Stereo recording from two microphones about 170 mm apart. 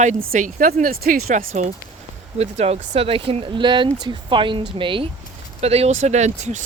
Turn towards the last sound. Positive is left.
turn(degrees=-45)  # may be behind; listen again after turning